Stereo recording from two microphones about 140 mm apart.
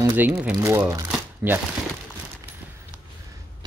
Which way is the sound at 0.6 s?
20° right (ahead or behind).